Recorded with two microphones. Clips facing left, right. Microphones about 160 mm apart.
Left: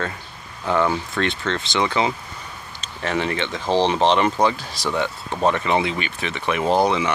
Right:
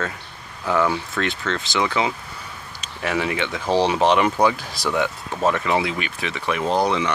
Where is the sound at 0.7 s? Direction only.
Centre (ahead or behind).